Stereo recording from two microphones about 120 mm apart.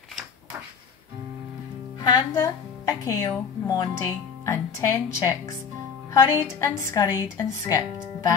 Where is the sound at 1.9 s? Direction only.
30° left (ahead or behind).